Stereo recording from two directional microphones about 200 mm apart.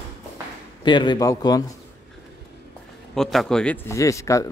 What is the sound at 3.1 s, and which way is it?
A man's voice, centre (ahead or behind).